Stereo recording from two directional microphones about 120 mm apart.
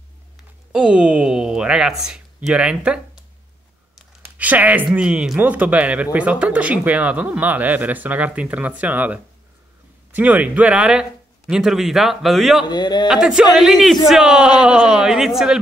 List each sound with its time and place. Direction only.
0.7 s speech: 10° right (ahead or behind)
4.4 s speech: 15° right (ahead or behind)
12.6 s a man's voice: 35° left (ahead or behind)
13.1 s speech: 5° right (ahead or behind)